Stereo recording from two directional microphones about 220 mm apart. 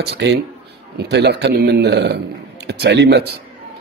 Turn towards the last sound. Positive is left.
turn(degrees=-50)  # may be behind; listen again after turning